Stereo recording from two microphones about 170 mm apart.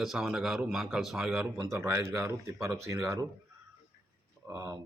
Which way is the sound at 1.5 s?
20° right (ahead or behind).